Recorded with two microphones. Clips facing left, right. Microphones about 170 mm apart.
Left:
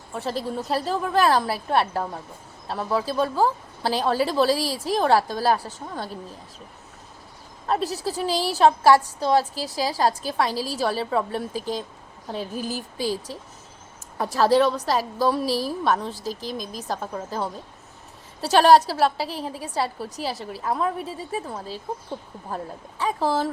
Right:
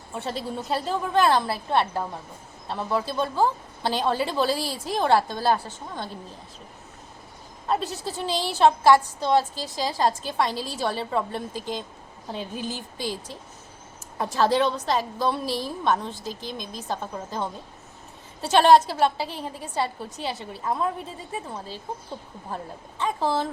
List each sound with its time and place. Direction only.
0.1 s a woman's voice: centre (ahead or behind)
8.0 s a woman's voice: 5° left (ahead or behind)
12.6 s speech: 5° left (ahead or behind)
14.2 s a woman's voice: 5° left (ahead or behind)
16.1 s a woman's voice: 40° left (ahead or behind)
16.5 s a woman's voice: 5° left (ahead or behind)